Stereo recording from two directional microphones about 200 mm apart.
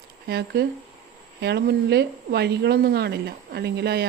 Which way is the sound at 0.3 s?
55° right (ahead or behind).